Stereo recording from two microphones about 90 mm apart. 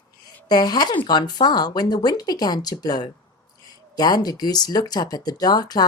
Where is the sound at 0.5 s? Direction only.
50° left (ahead or behind).